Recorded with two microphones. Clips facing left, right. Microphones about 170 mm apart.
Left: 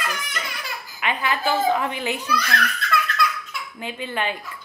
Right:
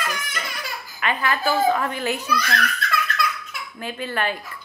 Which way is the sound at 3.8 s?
15° left (ahead or behind).